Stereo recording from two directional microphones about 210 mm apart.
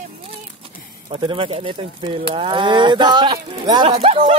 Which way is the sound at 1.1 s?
25° right (ahead or behind).